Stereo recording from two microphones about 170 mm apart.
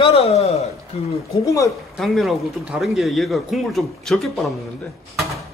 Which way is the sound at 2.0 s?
Centre (ahead or behind).